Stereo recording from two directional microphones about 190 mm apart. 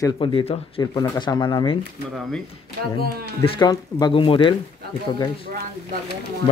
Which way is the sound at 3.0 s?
30° left (ahead or behind).